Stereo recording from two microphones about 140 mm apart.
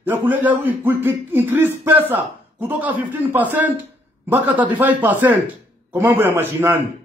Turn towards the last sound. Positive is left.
turn(degrees=-15)  # may be behind; listen again after turning